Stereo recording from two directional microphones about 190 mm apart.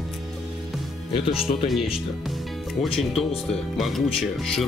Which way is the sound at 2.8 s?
Centre (ahead or behind).